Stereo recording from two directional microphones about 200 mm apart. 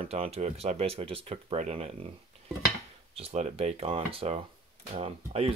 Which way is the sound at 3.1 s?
30° right (ahead or behind).